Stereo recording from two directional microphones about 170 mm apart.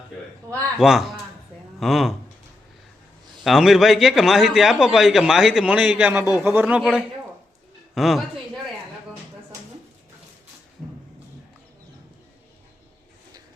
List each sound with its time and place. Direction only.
0.8 s a man's voice: centre (ahead or behind)
3.4 s a man's voice: centre (ahead or behind)